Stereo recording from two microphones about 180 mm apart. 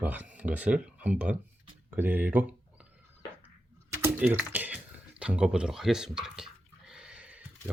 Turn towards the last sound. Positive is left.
turn(degrees=-5)  # may be behind; listen again after turning